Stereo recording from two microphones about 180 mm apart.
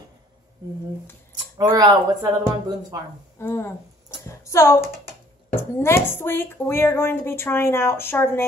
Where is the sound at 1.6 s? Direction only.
20° right (ahead or behind).